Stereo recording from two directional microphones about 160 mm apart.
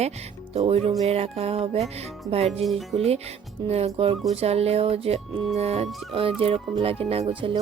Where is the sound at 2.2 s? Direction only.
25° right (ahead or behind).